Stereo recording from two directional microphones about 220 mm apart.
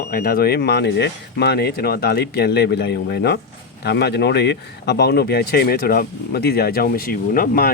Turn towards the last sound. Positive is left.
turn(degrees=40)  # may be behind; listen again after turning